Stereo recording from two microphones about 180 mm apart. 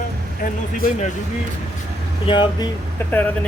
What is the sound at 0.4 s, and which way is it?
Speech, 45° left (ahead or behind).